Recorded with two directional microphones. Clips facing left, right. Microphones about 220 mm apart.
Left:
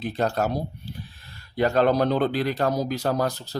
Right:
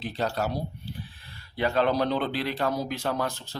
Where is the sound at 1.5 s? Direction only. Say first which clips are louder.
Left 4 dB; 45° left (ahead or behind).